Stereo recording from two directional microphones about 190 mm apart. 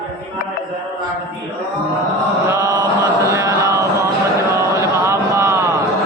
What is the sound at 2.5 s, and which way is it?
Chant, 15° right (ahead or behind).